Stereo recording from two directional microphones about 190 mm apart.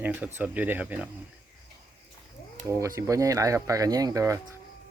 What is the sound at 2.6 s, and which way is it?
Speech, 15° right (ahead or behind).